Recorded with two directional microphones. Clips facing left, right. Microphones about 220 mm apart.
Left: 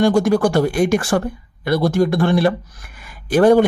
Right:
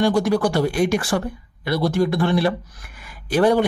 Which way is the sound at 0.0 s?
50° left (ahead or behind).